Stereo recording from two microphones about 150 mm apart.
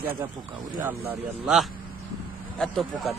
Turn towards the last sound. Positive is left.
turn(degrees=0)  # may be behind; listen again after turning